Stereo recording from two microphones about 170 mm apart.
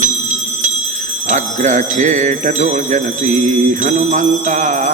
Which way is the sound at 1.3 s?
45° right (ahead or behind).